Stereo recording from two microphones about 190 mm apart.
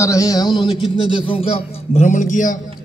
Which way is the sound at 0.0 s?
15° left (ahead or behind).